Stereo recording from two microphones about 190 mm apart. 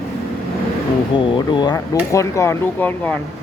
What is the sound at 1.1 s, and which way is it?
Speech, 25° left (ahead or behind).